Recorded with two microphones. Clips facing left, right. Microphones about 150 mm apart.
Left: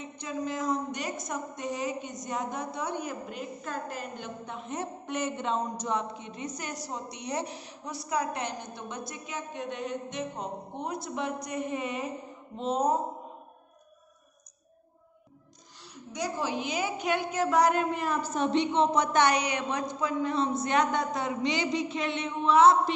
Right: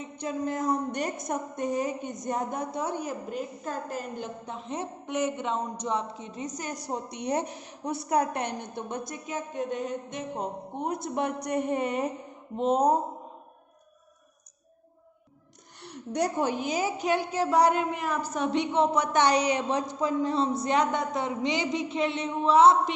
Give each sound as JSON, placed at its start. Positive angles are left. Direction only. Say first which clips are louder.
{"t": 0.2, "sound": "a woman's voice", "louder": "right 3 dB", "side_deg": -50}
{"t": 5.7, "sound": "a woman's voice", "louder": "right 1 dB", "side_deg": -25}
{"t": 15.8, "sound": "a woman's voice", "louder": "right 7 dB", "side_deg": -65}
{"t": 19.3, "sound": "a woman's voice", "louder": "right 4 dB", "side_deg": -35}